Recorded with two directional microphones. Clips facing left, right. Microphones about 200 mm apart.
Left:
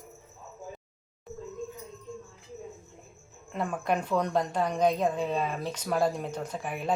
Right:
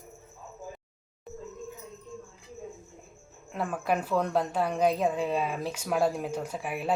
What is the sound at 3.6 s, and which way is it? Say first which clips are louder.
A woman's voice: even; 5° right (ahead or behind).